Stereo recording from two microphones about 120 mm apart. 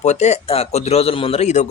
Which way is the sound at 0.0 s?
70° left (ahead or behind).